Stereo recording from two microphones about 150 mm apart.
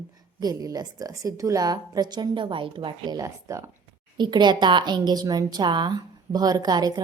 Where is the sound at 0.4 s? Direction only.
25° right (ahead or behind).